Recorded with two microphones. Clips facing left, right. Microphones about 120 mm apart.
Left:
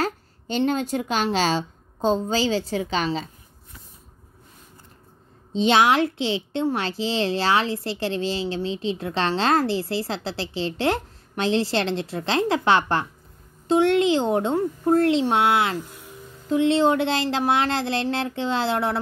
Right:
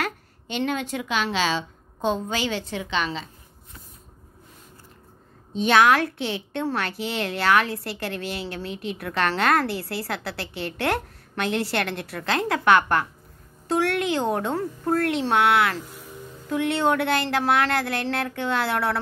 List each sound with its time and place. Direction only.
0.0 s a woman's voice: 35° left (ahead or behind)
5.5 s a woman's voice: 25° left (ahead or behind)